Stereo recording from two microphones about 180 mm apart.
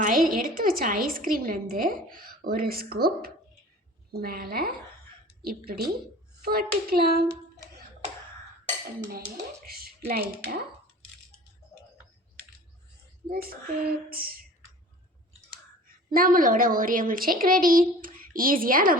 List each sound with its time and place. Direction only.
0.0 s a woman's voice: 50° right (ahead or behind)
9.0 s speech: 55° right (ahead or behind)
13.3 s speech: 55° right (ahead or behind)
15.9 s a woman's voice: 50° right (ahead or behind)